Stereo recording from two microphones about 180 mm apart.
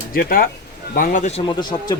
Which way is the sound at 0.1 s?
55° left (ahead or behind).